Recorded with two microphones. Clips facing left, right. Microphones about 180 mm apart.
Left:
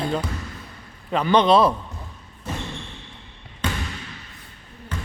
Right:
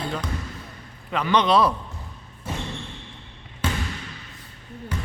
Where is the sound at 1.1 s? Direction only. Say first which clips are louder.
Left 3 dB; 30° left (ahead or behind).